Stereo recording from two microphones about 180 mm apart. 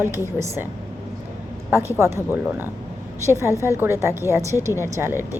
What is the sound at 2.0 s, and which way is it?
Speech, 15° right (ahead or behind).